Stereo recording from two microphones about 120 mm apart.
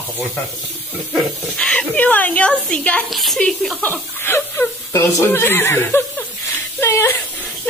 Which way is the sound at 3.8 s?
20° left (ahead or behind).